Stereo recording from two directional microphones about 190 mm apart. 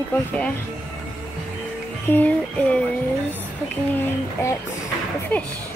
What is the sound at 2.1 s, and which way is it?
Music, 10° left (ahead or behind).